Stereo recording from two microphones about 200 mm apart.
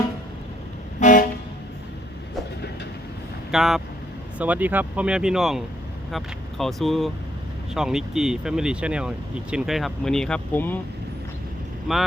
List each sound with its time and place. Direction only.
0.9 s toot: 40° left (ahead or behind)
3.5 s speech: centre (ahead or behind)
11.9 s speech: centre (ahead or behind)